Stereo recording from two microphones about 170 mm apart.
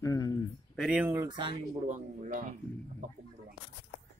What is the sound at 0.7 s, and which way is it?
Speech, 5° right (ahead or behind).